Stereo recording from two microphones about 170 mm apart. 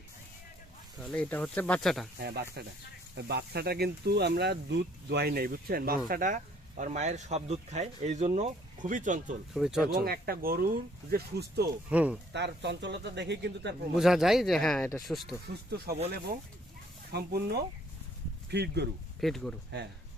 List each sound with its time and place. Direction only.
1.0 s speech: 5° left (ahead or behind)
2.1 s speech: 70° right (ahead or behind); by 9.3 s 50° right (ahead or behind)
9.5 s speech: centre (ahead or behind)
10.0 s speech: 60° right (ahead or behind)
11.1 s speech: 70° right (ahead or behind)
11.9 s speech: 10° right (ahead or behind)
12.3 s speech: 90° right
13.9 s speech: centre (ahead or behind)
17.1 s speech: 70° right (ahead or behind)
19.2 s speech: centre (ahead or behind)